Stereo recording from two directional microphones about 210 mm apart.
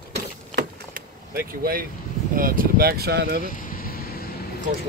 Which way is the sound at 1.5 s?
45° right (ahead or behind).